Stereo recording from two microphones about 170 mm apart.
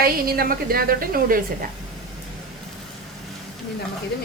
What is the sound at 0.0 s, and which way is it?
A woman's voice, 60° right (ahead or behind).